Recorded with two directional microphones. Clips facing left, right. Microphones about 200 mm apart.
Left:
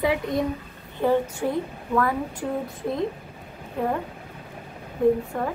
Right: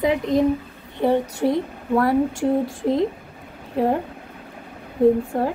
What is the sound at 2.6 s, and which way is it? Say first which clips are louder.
Speech: right 6 dB; 90° right.